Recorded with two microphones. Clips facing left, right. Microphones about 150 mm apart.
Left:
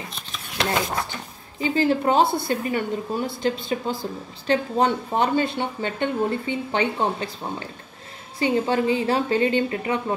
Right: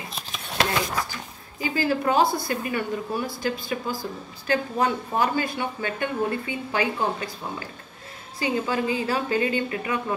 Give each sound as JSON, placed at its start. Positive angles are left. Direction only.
{"t": 1.6, "sound": "speech", "side_deg": 25}